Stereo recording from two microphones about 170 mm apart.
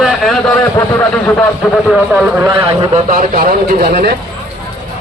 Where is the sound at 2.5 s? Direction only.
30° right (ahead or behind).